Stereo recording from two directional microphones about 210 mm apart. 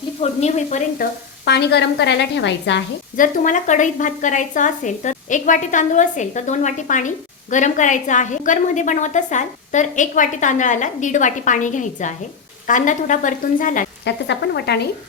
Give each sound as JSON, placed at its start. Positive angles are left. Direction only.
{"t": 0.2, "sound": "a woman's voice", "side_deg": 30}
{"t": 1.5, "sound": "a woman's voice", "side_deg": 55}
{"t": 3.2, "sound": "a woman's voice", "side_deg": 35}
{"t": 14.0, "sound": "speech", "side_deg": 55}